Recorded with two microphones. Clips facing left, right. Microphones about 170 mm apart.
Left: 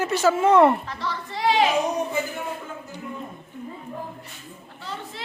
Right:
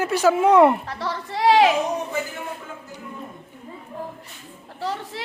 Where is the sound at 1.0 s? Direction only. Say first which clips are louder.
Right 5 dB; 75° right (ahead or behind).